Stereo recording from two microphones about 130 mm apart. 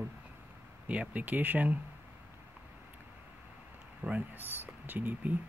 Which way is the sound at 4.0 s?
10° right (ahead or behind).